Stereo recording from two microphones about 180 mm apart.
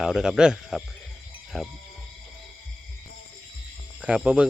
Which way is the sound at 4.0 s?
5° right (ahead or behind).